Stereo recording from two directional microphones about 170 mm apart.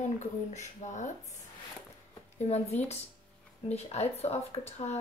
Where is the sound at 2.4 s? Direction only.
40° left (ahead or behind).